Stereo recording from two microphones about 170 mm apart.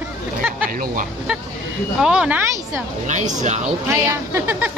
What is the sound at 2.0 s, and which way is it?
Speech, 5° right (ahead or behind).